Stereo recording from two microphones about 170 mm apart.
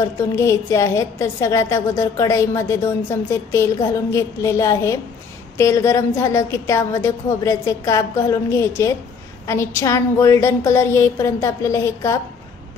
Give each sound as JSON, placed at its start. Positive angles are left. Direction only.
{"t": 0.0, "sound": "a woman's voice", "side_deg": 15}